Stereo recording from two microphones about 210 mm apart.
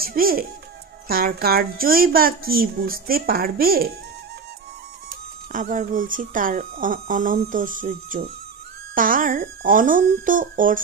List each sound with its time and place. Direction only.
0.0 s speech: 45° right (ahead or behind)
5.1 s speech: 40° right (ahead or behind)